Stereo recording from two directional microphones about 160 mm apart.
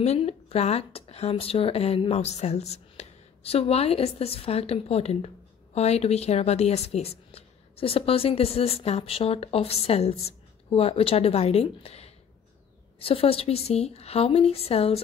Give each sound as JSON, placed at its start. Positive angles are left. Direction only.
{"t": 0.0, "sound": "speech", "side_deg": 40}